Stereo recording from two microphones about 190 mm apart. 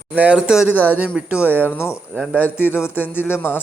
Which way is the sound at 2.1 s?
5° right (ahead or behind).